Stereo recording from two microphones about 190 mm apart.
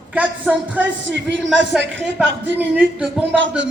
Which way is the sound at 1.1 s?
75° right (ahead or behind).